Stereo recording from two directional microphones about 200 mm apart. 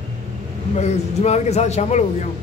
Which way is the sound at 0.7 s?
35° left (ahead or behind).